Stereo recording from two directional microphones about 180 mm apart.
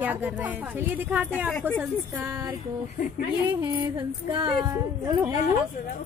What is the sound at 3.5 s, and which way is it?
Music, 25° right (ahead or behind).